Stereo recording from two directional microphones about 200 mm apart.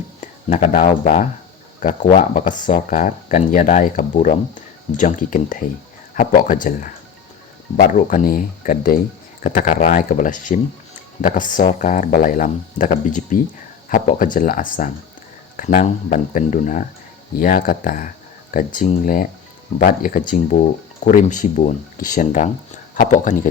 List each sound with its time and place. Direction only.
0.2 s speech: 35° left (ahead or behind)